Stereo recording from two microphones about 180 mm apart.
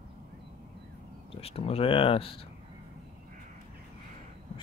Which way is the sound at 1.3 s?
35° left (ahead or behind).